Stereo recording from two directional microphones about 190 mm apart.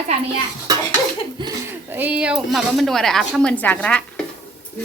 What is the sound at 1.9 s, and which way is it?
Speech, 10° right (ahead or behind).